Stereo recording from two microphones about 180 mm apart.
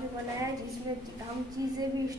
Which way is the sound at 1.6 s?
20° right (ahead or behind).